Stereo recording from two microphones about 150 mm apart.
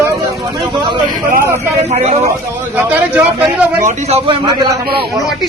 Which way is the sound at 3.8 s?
50° right (ahead or behind).